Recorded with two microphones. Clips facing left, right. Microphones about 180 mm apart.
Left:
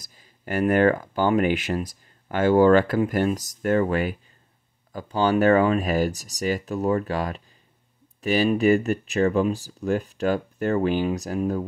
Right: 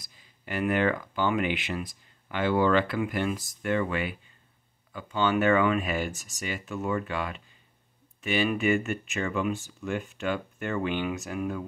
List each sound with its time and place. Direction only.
0.0 s speech: 40° left (ahead or behind)